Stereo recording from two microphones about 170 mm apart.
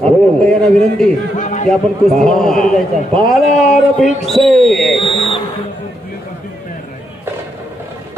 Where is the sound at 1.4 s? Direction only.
45° left (ahead or behind).